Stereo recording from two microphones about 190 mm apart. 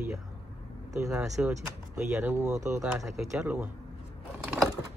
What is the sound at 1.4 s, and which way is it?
Speech, 5° right (ahead or behind).